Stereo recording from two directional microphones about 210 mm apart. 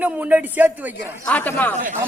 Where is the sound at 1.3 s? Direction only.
10° left (ahead or behind).